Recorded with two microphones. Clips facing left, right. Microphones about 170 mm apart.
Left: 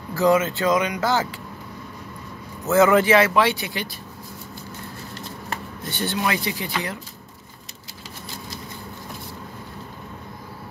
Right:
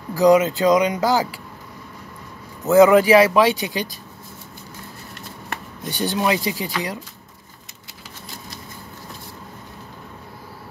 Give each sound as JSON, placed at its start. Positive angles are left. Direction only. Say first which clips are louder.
{"t": 0.1, "sound": "speech", "louder": "right 4 dB", "side_deg": -15}
{"t": 2.7, "sound": "speech", "louder": "right 4 dB", "side_deg": -15}
{"t": 5.9, "sound": "speech", "louder": "right 4 dB", "side_deg": -15}